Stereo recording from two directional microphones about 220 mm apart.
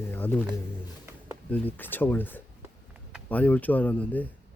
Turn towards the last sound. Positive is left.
turn(degrees=5)  # may be behind; listen again after turning